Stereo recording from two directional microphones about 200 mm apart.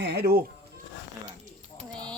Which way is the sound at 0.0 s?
55° right (ahead or behind).